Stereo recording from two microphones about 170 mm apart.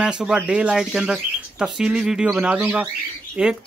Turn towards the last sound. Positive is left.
turn(degrees=-10)  # may be behind; listen again after turning